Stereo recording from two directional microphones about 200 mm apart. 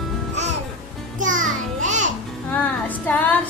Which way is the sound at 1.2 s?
40° right (ahead or behind).